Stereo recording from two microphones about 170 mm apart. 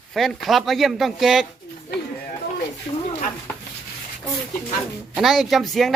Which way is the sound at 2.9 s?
35° left (ahead or behind).